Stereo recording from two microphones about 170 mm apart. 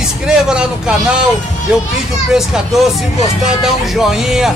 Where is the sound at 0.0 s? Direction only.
5° right (ahead or behind).